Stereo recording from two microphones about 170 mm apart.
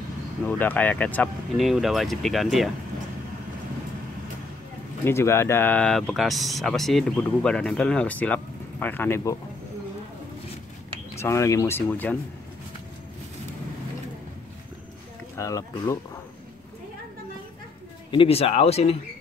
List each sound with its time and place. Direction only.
0.5 s speech: 10° left (ahead or behind)
5.0 s speech: 15° left (ahead or behind)
11.1 s speech: 15° left (ahead or behind)
15.3 s speech: 20° left (ahead or behind)
18.1 s speech: 35° left (ahead or behind)